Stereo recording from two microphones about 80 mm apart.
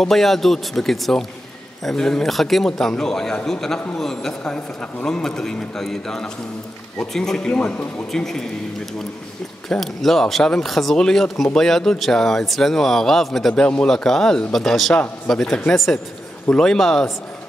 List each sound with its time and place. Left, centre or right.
0.0 s a man's voice: centre
9.7 s a man's voice: centre